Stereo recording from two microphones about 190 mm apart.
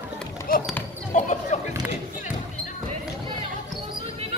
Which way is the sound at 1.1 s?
40° left (ahead or behind).